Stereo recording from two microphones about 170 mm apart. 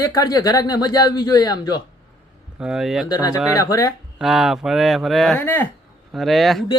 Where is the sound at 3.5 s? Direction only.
20° left (ahead or behind).